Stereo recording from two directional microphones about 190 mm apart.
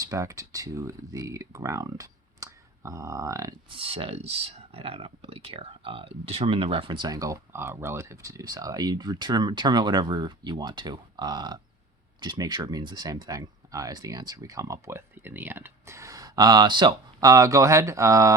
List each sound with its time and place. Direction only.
0.0 s speech: 15° right (ahead or behind)